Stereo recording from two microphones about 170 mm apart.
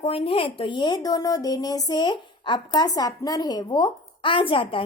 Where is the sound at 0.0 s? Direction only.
35° left (ahead or behind).